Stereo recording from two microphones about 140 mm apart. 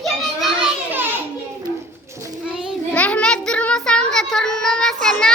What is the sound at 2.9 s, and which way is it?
Child singing, 10° left (ahead or behind).